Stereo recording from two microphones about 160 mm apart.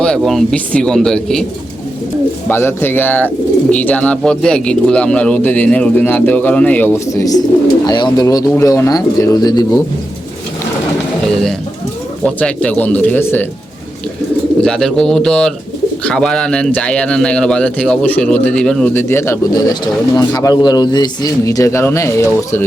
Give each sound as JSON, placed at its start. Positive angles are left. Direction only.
{"t": 0.0, "sound": "speech", "side_deg": 5}
{"t": 2.5, "sound": "a man's voice", "side_deg": 15}
{"t": 12.2, "sound": "speech", "side_deg": 5}
{"t": 14.6, "sound": "a man's voice", "side_deg": 5}